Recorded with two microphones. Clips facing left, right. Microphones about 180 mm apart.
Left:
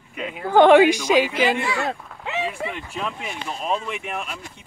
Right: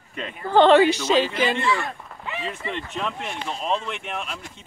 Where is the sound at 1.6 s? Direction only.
80° left.